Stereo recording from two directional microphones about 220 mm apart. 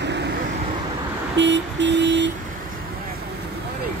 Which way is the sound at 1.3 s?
55° right (ahead or behind).